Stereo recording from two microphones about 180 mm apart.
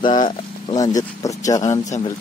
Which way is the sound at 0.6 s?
20° left (ahead or behind).